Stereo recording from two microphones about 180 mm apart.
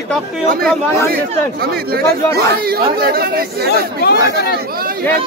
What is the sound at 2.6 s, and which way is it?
Speech, 60° right (ahead or behind).